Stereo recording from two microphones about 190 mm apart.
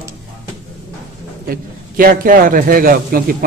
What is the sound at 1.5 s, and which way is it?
A man's voice, 50° right (ahead or behind).